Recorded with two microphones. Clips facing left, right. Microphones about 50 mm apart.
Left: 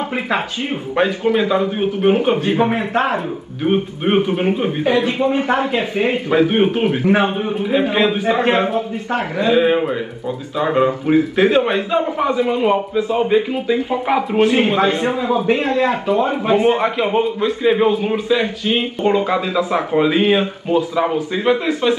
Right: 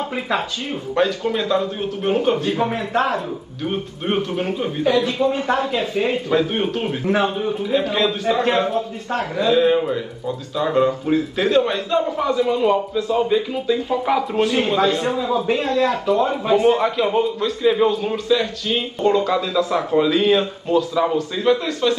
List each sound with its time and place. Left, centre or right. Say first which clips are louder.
0.9 s a man's voice: left 3 dB; left